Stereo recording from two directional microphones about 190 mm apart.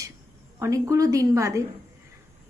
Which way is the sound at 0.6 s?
15° right (ahead or behind).